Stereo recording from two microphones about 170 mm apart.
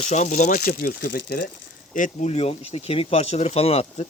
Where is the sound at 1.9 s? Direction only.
45° left (ahead or behind).